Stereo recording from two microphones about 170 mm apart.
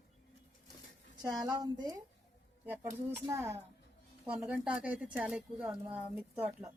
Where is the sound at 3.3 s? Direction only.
15° right (ahead or behind).